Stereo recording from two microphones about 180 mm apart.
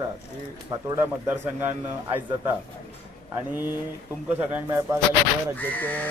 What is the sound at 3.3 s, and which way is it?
A man's voice, 10° right (ahead or behind).